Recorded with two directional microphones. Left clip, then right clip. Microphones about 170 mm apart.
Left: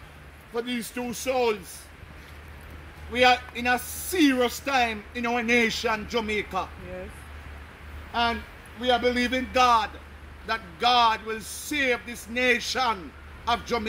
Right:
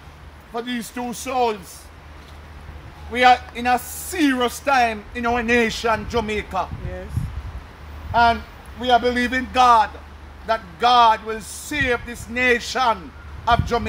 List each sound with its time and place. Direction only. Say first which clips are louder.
0.6 s speech: right 3 dB; 10° right (ahead or behind)
3.2 s speech: right 6 dB; 10° right (ahead or behind)
8.1 s speech: right 9 dB; 10° right (ahead or behind)